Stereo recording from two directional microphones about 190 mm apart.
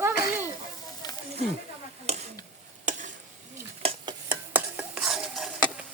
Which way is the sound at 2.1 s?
35° right (ahead or behind).